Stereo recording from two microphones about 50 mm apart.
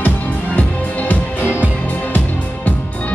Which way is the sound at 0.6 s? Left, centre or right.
Left.